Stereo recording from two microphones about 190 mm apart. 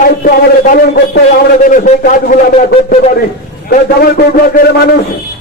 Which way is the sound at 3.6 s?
55° left (ahead or behind).